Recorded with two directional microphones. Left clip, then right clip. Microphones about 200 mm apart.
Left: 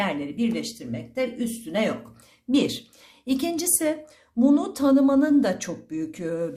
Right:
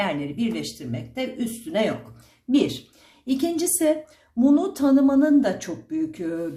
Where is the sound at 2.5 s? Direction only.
30° left (ahead or behind).